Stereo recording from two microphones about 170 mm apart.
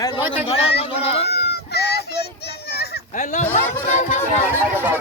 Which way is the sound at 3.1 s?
45° left (ahead or behind).